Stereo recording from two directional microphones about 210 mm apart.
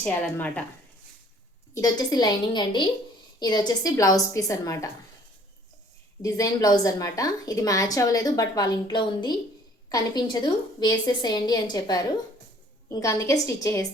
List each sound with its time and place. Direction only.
0.0 s a woman's voice: 5° left (ahead or behind)
1.7 s a woman's voice: 20° left (ahead or behind)
6.2 s a woman's voice: 15° left (ahead or behind)